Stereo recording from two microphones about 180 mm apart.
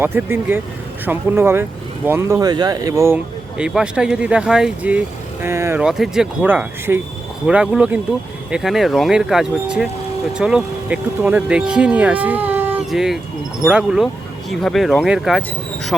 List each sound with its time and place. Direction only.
0.0 s speech: 10° right (ahead or behind)
3.6 s speech: 5° right (ahead or behind)